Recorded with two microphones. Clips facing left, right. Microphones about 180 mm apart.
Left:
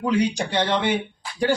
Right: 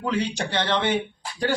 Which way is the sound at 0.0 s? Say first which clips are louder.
Left 4 dB; 15° left (ahead or behind).